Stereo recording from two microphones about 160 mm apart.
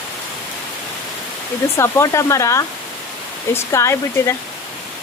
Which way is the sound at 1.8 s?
20° left (ahead or behind).